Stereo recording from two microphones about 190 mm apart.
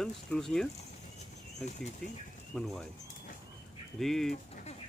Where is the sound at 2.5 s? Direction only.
Centre (ahead or behind).